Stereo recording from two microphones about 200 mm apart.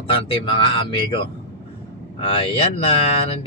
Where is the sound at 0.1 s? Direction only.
25° left (ahead or behind).